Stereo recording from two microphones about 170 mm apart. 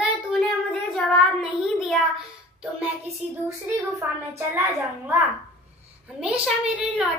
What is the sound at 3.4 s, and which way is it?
A woman's voice, 15° right (ahead or behind).